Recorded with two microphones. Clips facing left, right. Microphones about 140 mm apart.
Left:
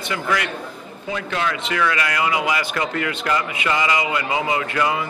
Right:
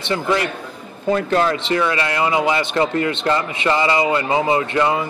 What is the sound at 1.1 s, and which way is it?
Speech, 40° right (ahead or behind).